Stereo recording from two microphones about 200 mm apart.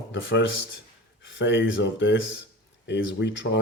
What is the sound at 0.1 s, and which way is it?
Speech, 65° left (ahead or behind).